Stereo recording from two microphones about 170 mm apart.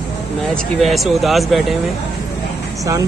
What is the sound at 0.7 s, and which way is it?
Speech, centre (ahead or behind).